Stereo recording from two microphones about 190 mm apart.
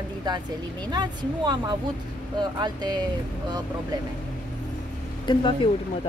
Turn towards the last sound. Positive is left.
turn(degrees=25)  # may be behind; listen again after turning